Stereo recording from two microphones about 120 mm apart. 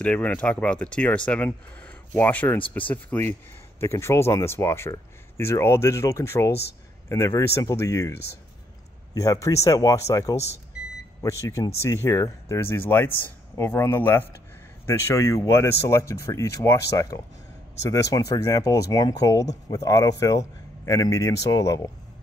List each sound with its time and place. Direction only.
0.0 s speech: 10° left (ahead or behind)
9.1 s speech: 30° left (ahead or behind)